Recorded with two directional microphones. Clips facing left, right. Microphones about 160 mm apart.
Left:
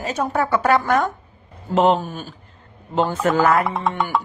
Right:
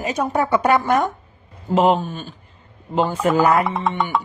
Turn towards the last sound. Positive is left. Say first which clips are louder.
# even
turn(degrees=0)  # may be behind; listen again after turning